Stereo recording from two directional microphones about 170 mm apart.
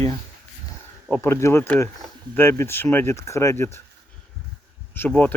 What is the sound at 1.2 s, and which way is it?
Speech, 15° left (ahead or behind).